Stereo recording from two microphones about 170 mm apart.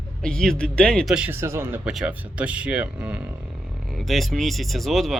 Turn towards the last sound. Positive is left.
turn(degrees=0)  # may be behind; listen again after turning